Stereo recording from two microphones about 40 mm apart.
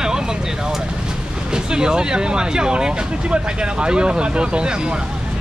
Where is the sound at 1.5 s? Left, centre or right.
Centre.